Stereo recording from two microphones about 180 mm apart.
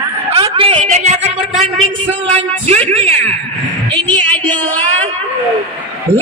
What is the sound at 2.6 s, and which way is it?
Speech, 30° right (ahead or behind).